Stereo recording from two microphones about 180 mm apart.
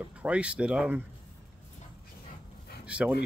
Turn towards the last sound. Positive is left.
turn(degrees=-5)  # may be behind; listen again after turning